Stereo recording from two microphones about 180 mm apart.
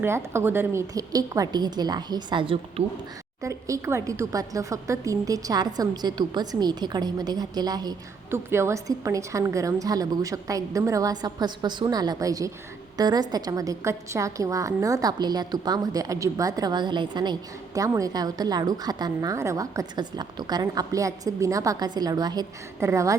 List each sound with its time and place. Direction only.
0.0 s a woman's voice: 15° right (ahead or behind)
3.4 s a woman's voice: 15° right (ahead or behind)